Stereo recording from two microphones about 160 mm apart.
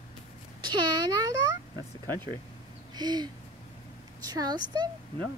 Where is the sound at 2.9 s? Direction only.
25° right (ahead or behind).